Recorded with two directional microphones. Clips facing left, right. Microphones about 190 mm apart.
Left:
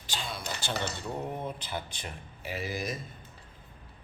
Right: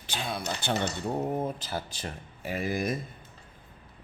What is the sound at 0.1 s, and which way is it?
Speech, 55° right (ahead or behind).